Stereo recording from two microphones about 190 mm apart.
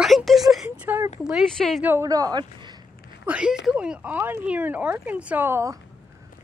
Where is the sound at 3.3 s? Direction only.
5° right (ahead or behind).